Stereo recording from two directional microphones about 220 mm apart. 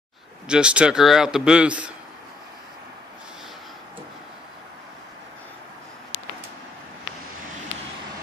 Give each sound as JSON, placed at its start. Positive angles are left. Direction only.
{"t": 0.5, "sound": "a man's voice", "side_deg": -5}